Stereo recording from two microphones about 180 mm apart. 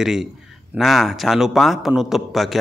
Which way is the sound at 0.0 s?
Centre (ahead or behind).